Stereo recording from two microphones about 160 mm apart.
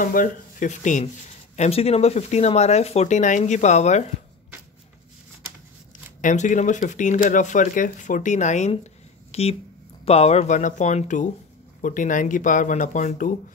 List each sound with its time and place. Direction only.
0.0 s speech: 60° left (ahead or behind)
1.6 s speech: 40° left (ahead or behind)
6.2 s speech: 50° left (ahead or behind)